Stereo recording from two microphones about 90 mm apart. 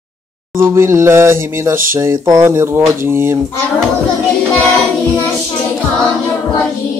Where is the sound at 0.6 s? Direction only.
30° right (ahead or behind).